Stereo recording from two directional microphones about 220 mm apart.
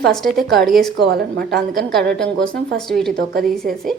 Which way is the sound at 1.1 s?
45° right (ahead or behind).